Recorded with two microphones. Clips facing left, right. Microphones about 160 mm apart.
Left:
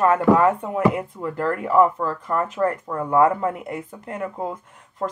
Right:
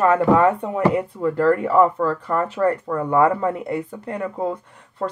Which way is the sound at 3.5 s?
35° right (ahead or behind).